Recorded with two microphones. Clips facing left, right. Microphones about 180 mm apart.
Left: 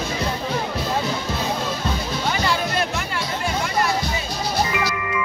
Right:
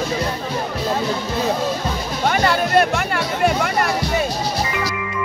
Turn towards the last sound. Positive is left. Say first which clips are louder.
# right 6 dB
turn(degrees=-60)  # may be behind; listen again after turning